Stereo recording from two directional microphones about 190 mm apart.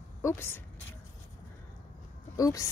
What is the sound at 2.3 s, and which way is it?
Speech, 20° left (ahead or behind).